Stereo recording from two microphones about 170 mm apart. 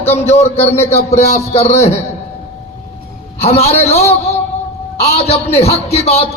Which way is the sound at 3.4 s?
35° left (ahead or behind).